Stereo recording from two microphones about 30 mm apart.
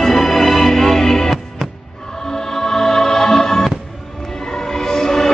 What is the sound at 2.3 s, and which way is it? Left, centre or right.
Music, centre.